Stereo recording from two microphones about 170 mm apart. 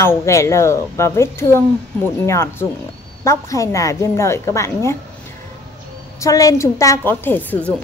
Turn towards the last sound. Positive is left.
turn(degrees=10)  # may be behind; listen again after turning